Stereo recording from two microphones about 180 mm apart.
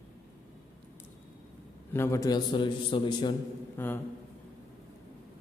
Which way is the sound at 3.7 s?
10° left (ahead or behind).